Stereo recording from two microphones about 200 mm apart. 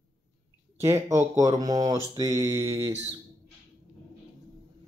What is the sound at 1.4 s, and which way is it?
Speech, 20° right (ahead or behind).